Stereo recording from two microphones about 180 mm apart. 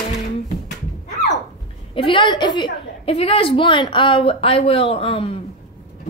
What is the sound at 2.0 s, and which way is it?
A woman's voice, 30° left (ahead or behind).